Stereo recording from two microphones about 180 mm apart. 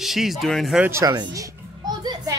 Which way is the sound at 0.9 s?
20° right (ahead or behind).